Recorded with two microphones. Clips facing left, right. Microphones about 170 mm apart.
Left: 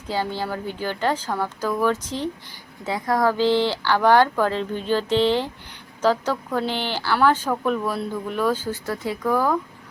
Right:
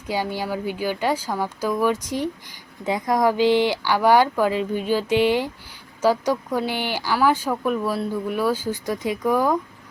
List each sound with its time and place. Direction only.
0.1 s speech: 15° right (ahead or behind)